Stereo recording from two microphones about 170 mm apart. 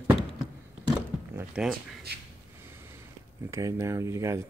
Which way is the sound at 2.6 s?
15° right (ahead or behind).